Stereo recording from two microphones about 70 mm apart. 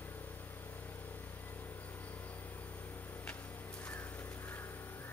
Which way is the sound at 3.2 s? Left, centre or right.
Left.